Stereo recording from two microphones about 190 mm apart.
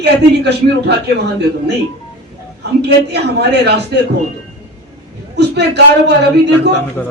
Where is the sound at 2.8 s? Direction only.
60° right (ahead or behind).